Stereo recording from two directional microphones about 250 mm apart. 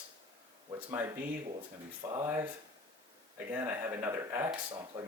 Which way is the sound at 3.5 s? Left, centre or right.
Centre.